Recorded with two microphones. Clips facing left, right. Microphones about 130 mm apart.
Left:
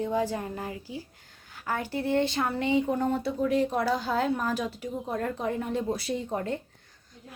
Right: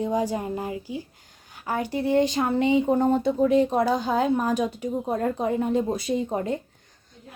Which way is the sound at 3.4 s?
20° right (ahead or behind).